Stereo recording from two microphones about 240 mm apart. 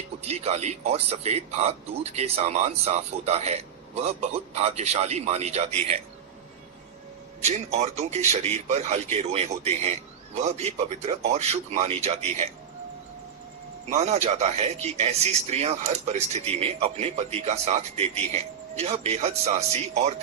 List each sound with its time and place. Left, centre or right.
0.2 s speech: right
7.4 s speech: right
13.9 s speech: right